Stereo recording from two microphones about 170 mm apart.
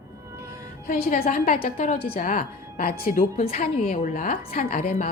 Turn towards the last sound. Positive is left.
turn(degrees=55)  # may be behind; listen again after turning